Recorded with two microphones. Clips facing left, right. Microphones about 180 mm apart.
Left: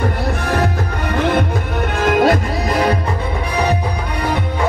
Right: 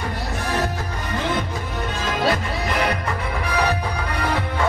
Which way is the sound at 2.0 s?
55° left (ahead or behind).